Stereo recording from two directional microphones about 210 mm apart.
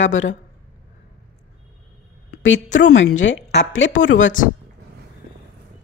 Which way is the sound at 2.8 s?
60° left (ahead or behind).